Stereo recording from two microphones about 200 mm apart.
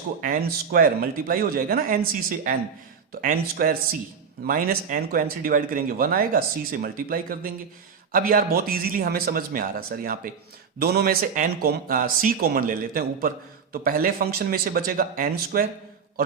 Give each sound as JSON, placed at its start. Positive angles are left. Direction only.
{"t": 0.2, "sound": "speech", "side_deg": -45}